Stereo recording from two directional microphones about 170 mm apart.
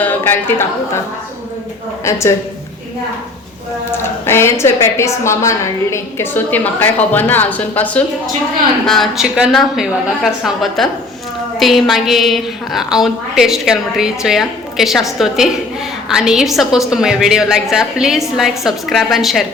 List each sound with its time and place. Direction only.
0.0 s a man's voice: 10° left (ahead or behind)
2.0 s a woman's voice: 15° left (ahead or behind)
3.9 s a woman's voice: 15° left (ahead or behind)